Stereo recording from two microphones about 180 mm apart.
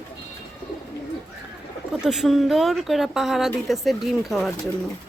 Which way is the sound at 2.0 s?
Centre (ahead or behind).